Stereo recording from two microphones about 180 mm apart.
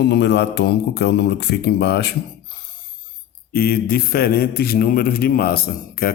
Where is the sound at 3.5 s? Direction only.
55° left (ahead or behind).